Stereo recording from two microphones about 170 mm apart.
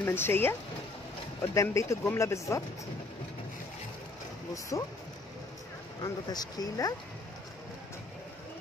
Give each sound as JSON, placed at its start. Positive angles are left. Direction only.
{"t": 0.0, "sound": "speech", "side_deg": 15}
{"t": 4.7, "sound": "speech", "side_deg": 20}
{"t": 6.0, "sound": "speech", "side_deg": 25}